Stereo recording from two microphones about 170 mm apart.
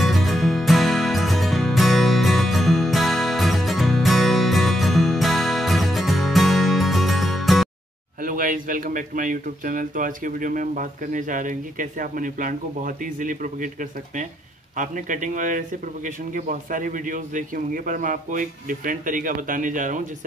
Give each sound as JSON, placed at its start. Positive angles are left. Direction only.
{"t": 0.0, "sound": "music", "side_deg": 0}
{"t": 8.2, "sound": "speech", "side_deg": -55}
{"t": 14.8, "sound": "speech", "side_deg": -50}